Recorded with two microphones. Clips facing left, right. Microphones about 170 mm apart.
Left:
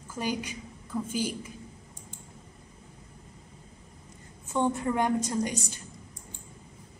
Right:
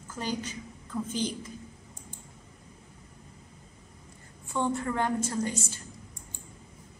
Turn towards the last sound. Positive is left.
turn(degrees=15)  # may be behind; listen again after turning